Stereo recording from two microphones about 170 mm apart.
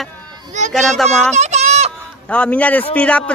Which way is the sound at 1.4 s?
40° right (ahead or behind).